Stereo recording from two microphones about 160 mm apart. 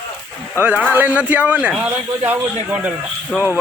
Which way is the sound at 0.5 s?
10° right (ahead or behind).